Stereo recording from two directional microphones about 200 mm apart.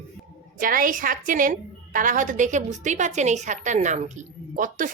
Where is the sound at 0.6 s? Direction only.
45° right (ahead or behind).